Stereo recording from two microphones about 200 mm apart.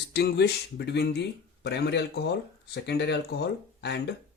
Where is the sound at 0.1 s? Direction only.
55° left (ahead or behind).